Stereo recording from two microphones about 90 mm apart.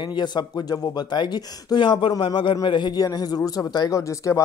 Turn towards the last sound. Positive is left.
turn(degrees=35)  # may be behind; listen again after turning